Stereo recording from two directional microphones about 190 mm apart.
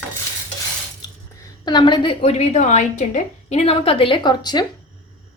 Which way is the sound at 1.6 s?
25° left (ahead or behind).